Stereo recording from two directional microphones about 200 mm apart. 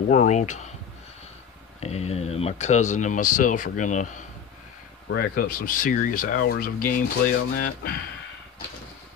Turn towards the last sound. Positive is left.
turn(degrees=50)  # may be behind; listen again after turning